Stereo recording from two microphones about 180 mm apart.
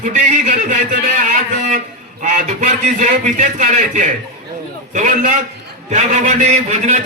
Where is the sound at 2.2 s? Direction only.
40° right (ahead or behind).